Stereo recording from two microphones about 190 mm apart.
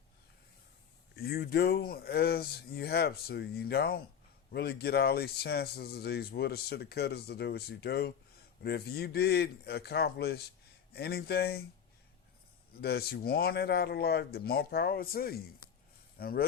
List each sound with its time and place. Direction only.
1.1 s speech: 55° left (ahead or behind)
12.7 s speech: 60° left (ahead or behind)